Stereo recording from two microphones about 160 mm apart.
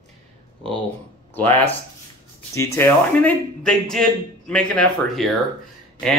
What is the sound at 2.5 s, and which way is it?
A man's voice, 20° left (ahead or behind).